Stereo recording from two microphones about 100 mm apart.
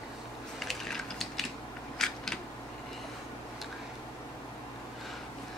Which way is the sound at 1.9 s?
5° left (ahead or behind).